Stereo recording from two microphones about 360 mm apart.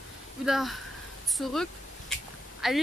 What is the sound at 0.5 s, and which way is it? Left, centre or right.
Speech, centre.